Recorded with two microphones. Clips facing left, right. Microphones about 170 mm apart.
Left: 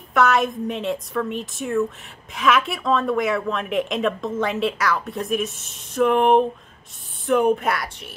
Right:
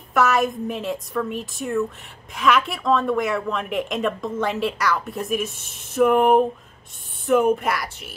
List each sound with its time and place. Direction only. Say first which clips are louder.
0.1 s a woman's voice: left 1 dB; centre (ahead or behind)